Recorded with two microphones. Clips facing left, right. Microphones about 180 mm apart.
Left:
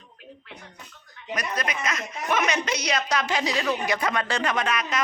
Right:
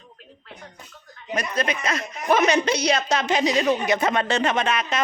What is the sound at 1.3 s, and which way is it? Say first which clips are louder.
A woman's voice: right 4 dB; 25° right (ahead or behind).